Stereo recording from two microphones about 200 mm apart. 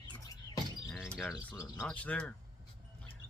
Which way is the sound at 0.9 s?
Centre (ahead or behind).